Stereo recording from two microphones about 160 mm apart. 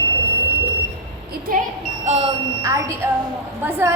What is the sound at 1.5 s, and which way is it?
Speech, 50° right (ahead or behind).